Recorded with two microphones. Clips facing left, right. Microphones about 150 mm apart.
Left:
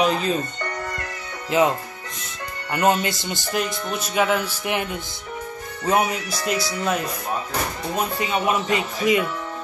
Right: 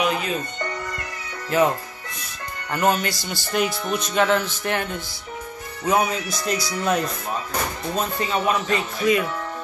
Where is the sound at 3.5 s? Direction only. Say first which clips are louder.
Right 3 dB; centre (ahead or behind).